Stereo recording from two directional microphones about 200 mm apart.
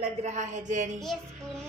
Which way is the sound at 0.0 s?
35° right (ahead or behind).